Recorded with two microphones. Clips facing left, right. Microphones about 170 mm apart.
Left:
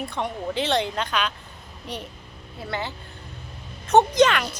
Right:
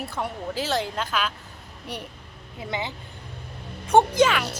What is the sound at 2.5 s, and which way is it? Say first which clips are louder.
A woman's voice: even; 15° right (ahead or behind).